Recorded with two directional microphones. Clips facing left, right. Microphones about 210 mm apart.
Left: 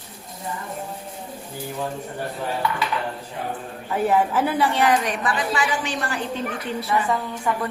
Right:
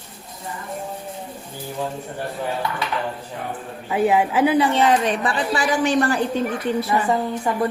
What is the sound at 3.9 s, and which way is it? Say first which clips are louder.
A woman's voice: right 2 dB; 10° right (ahead or behind).